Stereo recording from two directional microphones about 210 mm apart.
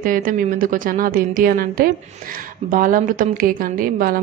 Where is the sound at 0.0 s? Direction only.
40° right (ahead or behind).